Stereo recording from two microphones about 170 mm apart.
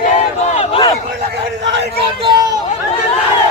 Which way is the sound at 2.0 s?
30° right (ahead or behind).